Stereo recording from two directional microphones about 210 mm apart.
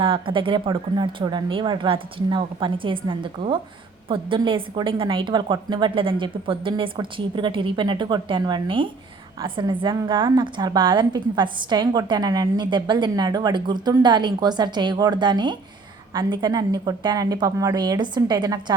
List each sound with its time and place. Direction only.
0.0 s a woman's voice: 25° right (ahead or behind)